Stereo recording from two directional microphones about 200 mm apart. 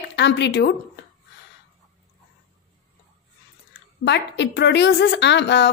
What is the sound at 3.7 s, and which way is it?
Speech, 60° left (ahead or behind).